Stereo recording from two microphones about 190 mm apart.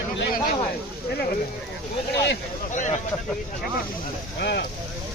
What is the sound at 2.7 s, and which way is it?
Speech, 40° left (ahead or behind).